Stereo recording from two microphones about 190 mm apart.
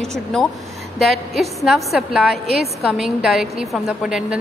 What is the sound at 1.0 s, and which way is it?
A woman's voice, centre (ahead or behind).